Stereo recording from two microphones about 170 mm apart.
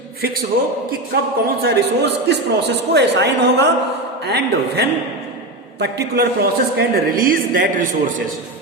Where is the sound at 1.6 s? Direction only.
80° right.